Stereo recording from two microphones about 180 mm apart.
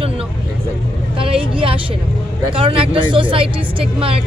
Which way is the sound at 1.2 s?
30° right (ahead or behind).